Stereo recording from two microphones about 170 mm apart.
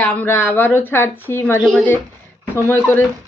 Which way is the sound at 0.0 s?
10° left (ahead or behind).